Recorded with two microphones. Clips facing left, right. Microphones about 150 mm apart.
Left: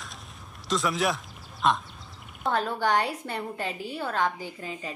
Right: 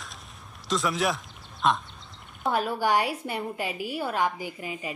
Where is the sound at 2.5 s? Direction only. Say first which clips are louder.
Right 1 dB; 10° right (ahead or behind).